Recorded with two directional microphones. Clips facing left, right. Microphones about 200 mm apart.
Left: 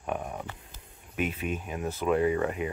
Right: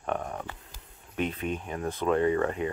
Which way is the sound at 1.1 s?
10° left (ahead or behind).